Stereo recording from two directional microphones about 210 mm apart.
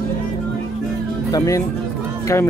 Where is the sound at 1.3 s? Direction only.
15° left (ahead or behind).